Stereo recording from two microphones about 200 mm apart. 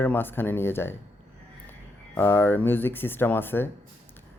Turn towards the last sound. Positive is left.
turn(degrees=10)  # may be behind; listen again after turning